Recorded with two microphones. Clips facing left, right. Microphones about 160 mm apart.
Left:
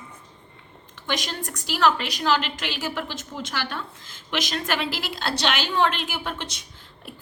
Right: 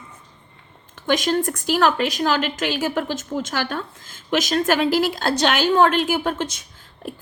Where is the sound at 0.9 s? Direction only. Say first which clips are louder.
Right 10 dB; 50° right (ahead or behind).